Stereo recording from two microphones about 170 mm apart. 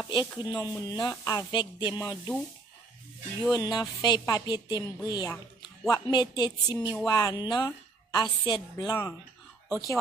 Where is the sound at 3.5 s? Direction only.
25° left (ahead or behind).